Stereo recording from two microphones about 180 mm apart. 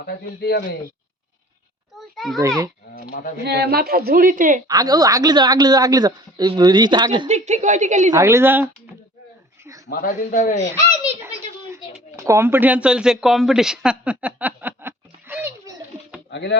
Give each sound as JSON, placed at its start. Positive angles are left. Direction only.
{"t": 0.0, "sound": "speech", "side_deg": 55}
{"t": 2.0, "sound": "a sound", "side_deg": 0}
{"t": 3.0, "sound": "a man's voice", "side_deg": 50}
{"t": 3.4, "sound": "a woman's voice", "side_deg": -65}
{"t": 4.7, "sound": "a man's voice", "side_deg": -20}
{"t": 7.3, "sound": "a woman's voice", "side_deg": -40}
{"t": 8.1, "sound": "speech", "side_deg": -15}
{"t": 9.6, "sound": "a sound", "side_deg": -15}
{"t": 9.9, "sound": "a man's voice", "side_deg": 50}
{"t": 12.1, "sound": "speech", "side_deg": -15}
{"t": 16.3, "sound": "speech", "side_deg": 80}